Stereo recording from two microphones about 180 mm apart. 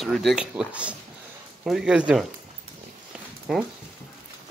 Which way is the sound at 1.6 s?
5° right (ahead or behind).